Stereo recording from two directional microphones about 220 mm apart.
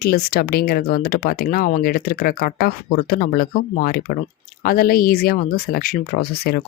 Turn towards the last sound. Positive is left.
turn(degrees=45)  # may be behind; listen again after turning